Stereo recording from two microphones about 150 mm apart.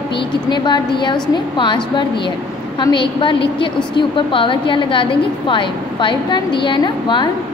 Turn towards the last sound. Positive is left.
turn(degrees=30)  # may be behind; listen again after turning